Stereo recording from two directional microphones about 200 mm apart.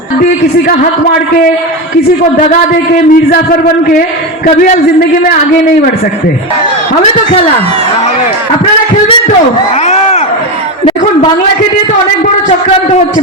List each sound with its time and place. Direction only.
3.1 s a man's voice: 45° left (ahead or behind)
4.4 s a man's voice: 40° left (ahead or behind)
9.8 s a sound: 35° left (ahead or behind)